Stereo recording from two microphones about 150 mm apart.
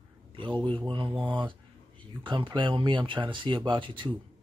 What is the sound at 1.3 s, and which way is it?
Speech, 35° right (ahead or behind).